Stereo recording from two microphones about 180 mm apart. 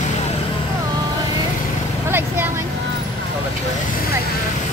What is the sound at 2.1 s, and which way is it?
Vehicle, 10° right (ahead or behind).